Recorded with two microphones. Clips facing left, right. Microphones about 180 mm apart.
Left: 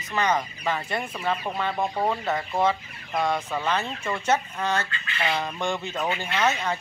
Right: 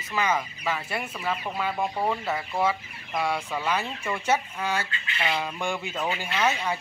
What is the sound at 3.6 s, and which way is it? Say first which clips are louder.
Speech: left 1 dB; 10° right (ahead or behind).